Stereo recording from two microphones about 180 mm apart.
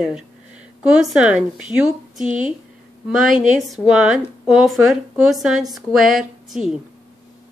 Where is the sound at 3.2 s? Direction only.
45° right (ahead or behind).